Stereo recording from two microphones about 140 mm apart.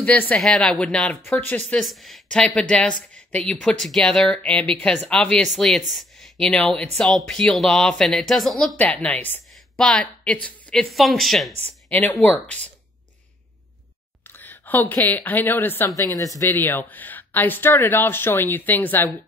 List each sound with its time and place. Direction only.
0.0 s speech: 10° left (ahead or behind)
1.7 s speech: centre (ahead or behind)
8.7 s a woman's voice: 10° left (ahead or behind)
11.6 s speech: 10° left (ahead or behind)
14.3 s a woman's voice: 10° left (ahead or behind)